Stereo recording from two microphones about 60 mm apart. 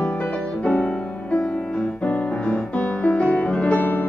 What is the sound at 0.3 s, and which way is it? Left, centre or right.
Music, centre.